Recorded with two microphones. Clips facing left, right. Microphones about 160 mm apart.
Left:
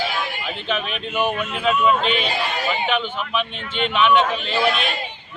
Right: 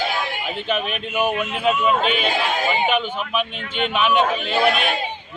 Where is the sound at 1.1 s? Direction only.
10° right (ahead or behind).